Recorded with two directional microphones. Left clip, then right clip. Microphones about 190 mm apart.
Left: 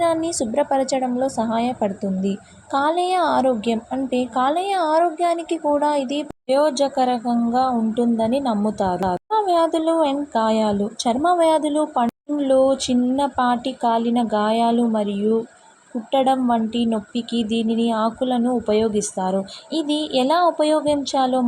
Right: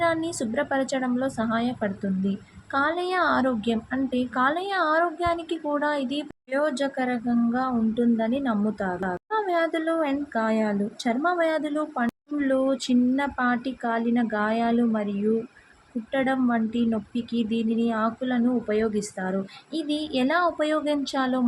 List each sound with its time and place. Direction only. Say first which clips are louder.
0.0 s a woman's voice: left 5 dB; 10° left (ahead or behind)
16.1 s a woman's voice: left 7 dB; 15° left (ahead or behind)